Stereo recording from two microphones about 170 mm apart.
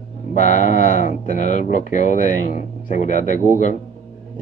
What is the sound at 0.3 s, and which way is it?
Speech, 50° left (ahead or behind).